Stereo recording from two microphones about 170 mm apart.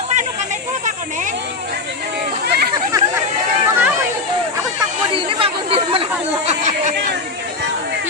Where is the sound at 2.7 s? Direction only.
20° right (ahead or behind).